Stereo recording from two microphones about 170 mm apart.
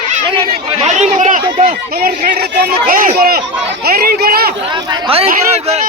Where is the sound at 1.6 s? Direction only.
60° right (ahead or behind).